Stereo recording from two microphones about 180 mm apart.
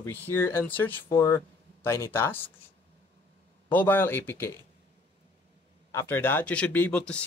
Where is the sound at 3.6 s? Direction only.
10° left (ahead or behind).